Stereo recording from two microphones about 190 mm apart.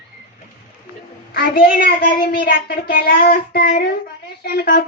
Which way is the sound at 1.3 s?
55° left (ahead or behind).